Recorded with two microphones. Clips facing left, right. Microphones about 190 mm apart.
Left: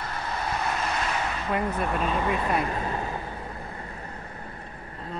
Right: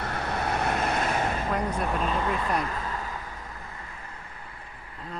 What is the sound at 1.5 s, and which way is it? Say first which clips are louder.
Speech: left 1 dB; 5° left (ahead or behind).